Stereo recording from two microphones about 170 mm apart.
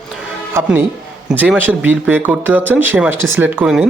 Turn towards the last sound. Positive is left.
turn(degrees=-5)  # may be behind; listen again after turning